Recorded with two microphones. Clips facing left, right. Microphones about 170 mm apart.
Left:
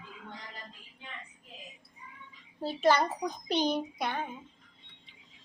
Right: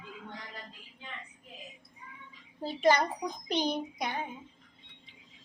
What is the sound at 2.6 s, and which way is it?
Speech, 10° right (ahead or behind).